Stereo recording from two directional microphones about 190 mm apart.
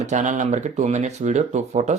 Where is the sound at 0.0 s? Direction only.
40° right (ahead or behind).